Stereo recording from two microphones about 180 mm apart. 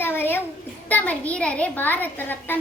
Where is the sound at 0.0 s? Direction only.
10° left (ahead or behind).